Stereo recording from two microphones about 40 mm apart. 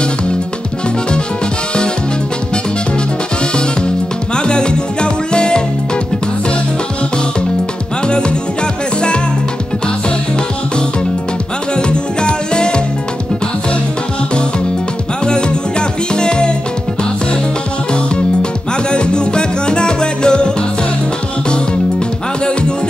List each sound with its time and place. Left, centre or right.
4.4 s music: left
11.7 s music: left
16.2 s music: left
18.1 s music: left